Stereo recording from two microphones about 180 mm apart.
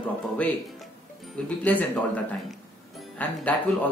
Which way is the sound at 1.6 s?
10° left (ahead or behind).